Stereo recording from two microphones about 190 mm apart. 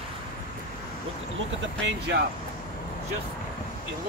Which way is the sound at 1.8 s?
65° right (ahead or behind).